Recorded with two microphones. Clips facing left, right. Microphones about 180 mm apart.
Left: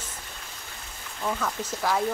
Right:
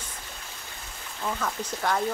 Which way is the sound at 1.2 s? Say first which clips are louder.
Left 1 dB; centre (ahead or behind).